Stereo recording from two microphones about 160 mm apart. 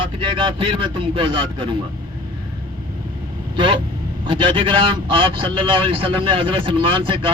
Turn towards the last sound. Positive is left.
turn(degrees=-30)  # may be behind; listen again after turning